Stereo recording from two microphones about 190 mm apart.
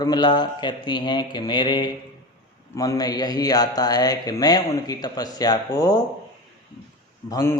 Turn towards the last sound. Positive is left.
turn(degrees=20)  # may be behind; listen again after turning